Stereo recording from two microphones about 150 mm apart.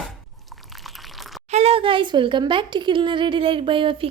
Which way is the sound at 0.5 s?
Centre (ahead or behind).